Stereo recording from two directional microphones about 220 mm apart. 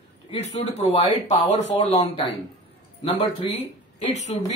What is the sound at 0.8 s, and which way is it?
Speech, 30° left (ahead or behind).